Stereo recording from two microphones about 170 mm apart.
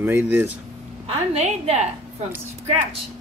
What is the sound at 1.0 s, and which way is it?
Speech, 40° right (ahead or behind).